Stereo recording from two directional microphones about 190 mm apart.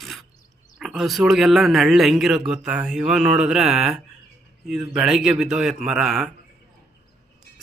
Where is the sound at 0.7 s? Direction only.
Centre (ahead or behind).